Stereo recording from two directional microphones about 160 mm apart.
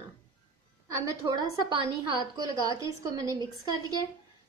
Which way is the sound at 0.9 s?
20° right (ahead or behind).